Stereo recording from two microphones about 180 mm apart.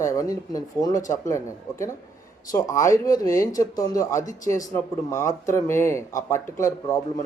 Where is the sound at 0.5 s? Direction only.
20° left (ahead or behind).